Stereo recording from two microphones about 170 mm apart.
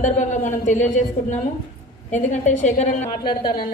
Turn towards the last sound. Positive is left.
turn(degrees=25)  # may be behind; listen again after turning